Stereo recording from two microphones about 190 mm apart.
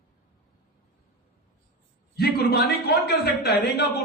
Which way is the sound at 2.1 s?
55° left (ahead or behind).